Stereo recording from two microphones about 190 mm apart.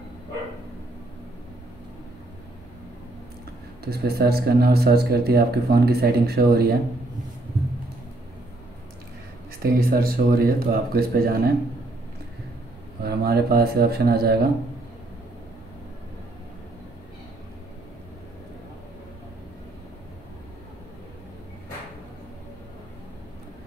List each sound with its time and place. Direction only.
3.8 s speech: 55° right (ahead or behind)
9.6 s speech: 50° right (ahead or behind)
13.0 s speech: 55° right (ahead or behind)